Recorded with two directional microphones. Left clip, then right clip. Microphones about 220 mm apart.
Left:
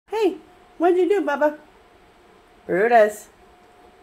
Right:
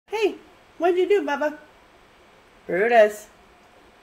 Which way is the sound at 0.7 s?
15° left (ahead or behind).